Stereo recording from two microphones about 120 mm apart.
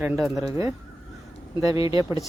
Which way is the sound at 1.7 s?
45° left (ahead or behind).